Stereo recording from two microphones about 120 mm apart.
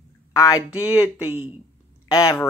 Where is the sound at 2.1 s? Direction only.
30° left (ahead or behind).